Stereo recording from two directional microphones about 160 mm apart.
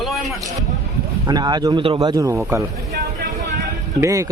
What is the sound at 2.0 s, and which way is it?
Speech, 20° right (ahead or behind).